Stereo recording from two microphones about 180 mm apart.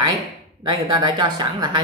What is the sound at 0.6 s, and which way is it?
Speech, 25° right (ahead or behind).